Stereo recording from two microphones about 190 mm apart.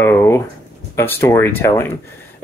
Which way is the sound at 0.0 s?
15° left (ahead or behind).